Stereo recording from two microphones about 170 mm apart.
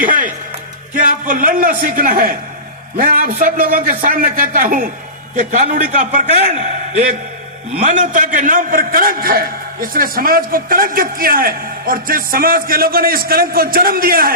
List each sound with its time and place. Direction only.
0.0 s a man's voice: 55° right (ahead or behind)